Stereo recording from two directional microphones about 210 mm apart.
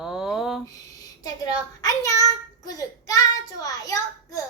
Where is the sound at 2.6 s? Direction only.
15° left (ahead or behind).